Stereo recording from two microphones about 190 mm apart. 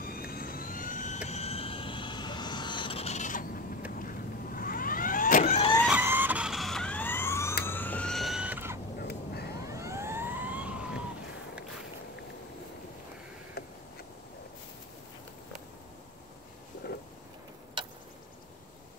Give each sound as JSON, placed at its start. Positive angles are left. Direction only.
{"t": 0.0, "sound": "vehicle", "side_deg": 50}
{"t": 5.9, "sound": "vehicle", "side_deg": -10}
{"t": 8.9, "sound": "crow", "side_deg": 55}
{"t": 9.7, "sound": "emergency vehicle", "side_deg": -15}
{"t": 13.6, "sound": "a sound", "side_deg": 55}